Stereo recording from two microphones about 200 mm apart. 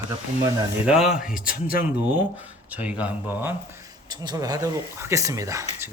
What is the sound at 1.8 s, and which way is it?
Speech, 10° right (ahead or behind).